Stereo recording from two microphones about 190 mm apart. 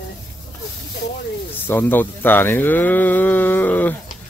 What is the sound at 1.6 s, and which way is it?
Speech, 10° left (ahead or behind).